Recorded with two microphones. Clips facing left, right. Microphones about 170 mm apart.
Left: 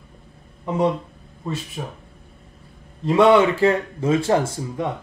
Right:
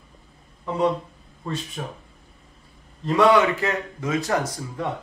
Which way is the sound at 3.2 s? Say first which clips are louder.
Left 3 dB; 25° left (ahead or behind).